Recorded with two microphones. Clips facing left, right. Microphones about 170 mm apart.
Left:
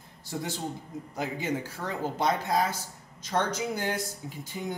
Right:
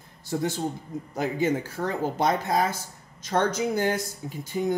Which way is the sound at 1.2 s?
50° right (ahead or behind).